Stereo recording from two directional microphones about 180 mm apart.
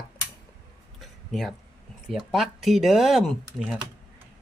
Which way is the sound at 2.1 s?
Centre (ahead or behind).